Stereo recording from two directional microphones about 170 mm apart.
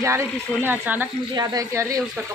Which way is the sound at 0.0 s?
15° right (ahead or behind).